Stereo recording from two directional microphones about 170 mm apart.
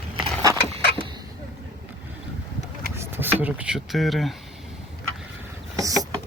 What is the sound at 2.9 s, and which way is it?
Speech, 15° right (ahead or behind).